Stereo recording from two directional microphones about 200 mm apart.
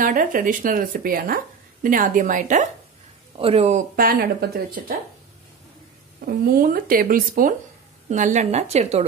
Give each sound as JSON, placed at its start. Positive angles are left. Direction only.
{"t": 0.0, "sound": "speech", "side_deg": -45}
{"t": 6.2, "sound": "a woman's voice", "side_deg": -45}